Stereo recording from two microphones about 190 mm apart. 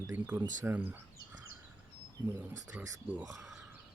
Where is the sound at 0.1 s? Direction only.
10° right (ahead or behind).